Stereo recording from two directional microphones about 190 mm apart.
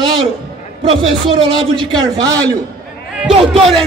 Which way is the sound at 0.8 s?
25° right (ahead or behind).